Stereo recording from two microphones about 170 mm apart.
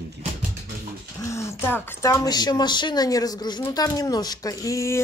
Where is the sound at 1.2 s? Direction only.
15° left (ahead or behind).